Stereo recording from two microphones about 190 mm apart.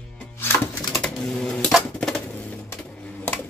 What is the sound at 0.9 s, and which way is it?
Typewriter, centre (ahead or behind).